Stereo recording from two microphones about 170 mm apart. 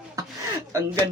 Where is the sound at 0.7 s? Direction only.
15° right (ahead or behind).